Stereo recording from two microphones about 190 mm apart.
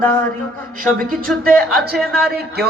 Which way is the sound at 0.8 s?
50° right (ahead or behind).